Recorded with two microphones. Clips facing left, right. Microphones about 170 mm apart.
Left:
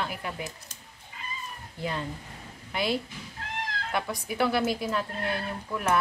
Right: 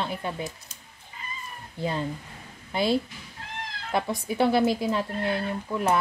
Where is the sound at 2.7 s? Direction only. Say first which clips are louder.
Right 4 dB; 30° right (ahead or behind).